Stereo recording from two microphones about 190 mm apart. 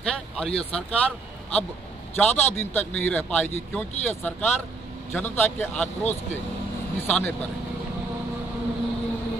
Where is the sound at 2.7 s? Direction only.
10° left (ahead or behind).